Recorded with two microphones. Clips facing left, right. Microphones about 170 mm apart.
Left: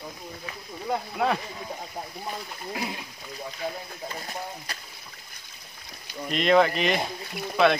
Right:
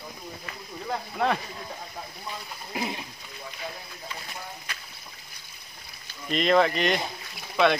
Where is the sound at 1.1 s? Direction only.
5° left (ahead or behind).